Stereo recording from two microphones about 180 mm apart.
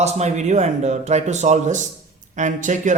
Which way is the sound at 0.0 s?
40° right (ahead or behind).